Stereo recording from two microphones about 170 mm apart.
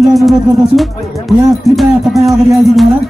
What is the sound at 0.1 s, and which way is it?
Speech, centre (ahead or behind).